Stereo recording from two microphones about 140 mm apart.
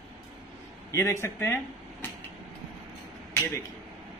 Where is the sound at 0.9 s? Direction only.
20° left (ahead or behind).